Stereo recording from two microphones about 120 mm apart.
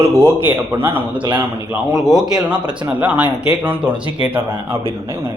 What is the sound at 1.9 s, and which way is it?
Speech, centre (ahead or behind).